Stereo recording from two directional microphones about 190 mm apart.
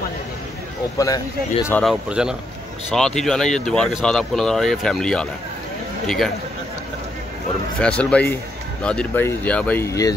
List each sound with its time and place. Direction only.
0.9 s speech: 15° left (ahead or behind)
1.8 s speech: centre (ahead or behind)
8.0 s speech: 5° left (ahead or behind)